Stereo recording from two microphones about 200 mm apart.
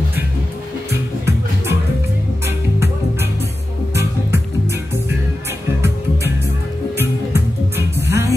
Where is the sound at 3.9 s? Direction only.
15° right (ahead or behind).